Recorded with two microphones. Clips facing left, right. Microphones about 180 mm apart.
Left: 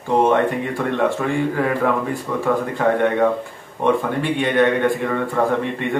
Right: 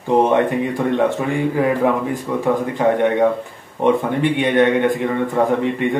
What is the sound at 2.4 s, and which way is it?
A man's voice, 15° right (ahead or behind).